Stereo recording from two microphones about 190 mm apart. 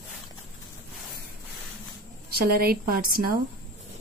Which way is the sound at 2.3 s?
55° right (ahead or behind).